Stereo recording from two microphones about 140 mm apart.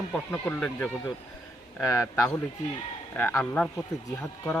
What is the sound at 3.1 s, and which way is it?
Speech, 10° left (ahead or behind).